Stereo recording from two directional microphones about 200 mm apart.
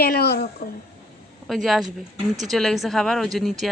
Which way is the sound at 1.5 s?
Centre (ahead or behind).